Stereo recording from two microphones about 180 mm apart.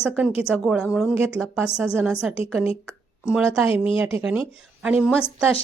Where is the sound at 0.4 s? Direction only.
5° right (ahead or behind).